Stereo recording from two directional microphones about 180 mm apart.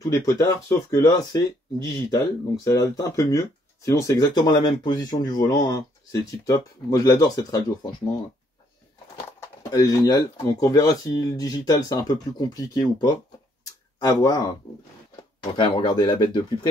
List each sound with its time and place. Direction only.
0.1 s speech: 20° left (ahead or behind)
9.6 s speech: 20° left (ahead or behind)
15.5 s speech: 25° left (ahead or behind)